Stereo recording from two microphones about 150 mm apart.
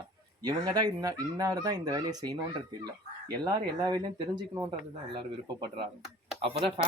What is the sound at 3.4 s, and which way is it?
Speech, 30° right (ahead or behind).